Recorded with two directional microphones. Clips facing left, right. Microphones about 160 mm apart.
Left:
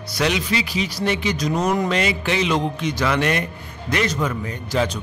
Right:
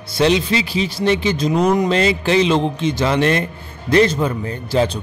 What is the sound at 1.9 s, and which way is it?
A man's voice, 30° right (ahead or behind).